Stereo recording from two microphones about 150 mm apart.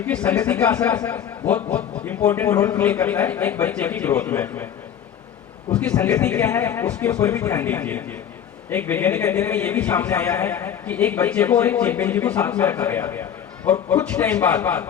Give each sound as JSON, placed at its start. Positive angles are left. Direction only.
{"t": 0.0, "sound": "a man's voice", "side_deg": 10}
{"t": 5.7, "sound": "a man's voice", "side_deg": 10}